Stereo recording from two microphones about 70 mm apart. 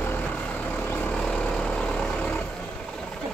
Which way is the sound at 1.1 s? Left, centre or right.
Centre.